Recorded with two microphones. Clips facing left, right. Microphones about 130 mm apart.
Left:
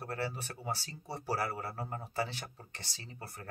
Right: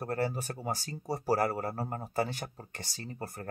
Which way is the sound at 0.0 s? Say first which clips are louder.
Right 6 dB; 40° right (ahead or behind).